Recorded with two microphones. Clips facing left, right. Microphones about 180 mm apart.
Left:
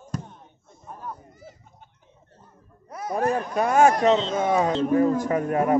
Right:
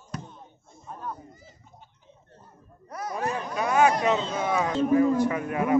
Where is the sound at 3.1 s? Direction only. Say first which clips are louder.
Left 7 dB; 50° left (ahead or behind).